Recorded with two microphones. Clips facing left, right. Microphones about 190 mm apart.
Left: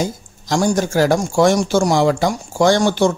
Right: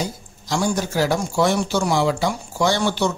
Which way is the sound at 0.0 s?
45° left (ahead or behind).